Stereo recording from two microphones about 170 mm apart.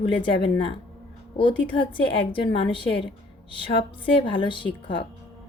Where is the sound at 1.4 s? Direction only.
30° left (ahead or behind).